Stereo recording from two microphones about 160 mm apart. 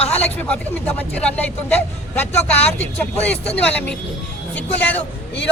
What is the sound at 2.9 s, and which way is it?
Speech, 10° left (ahead or behind).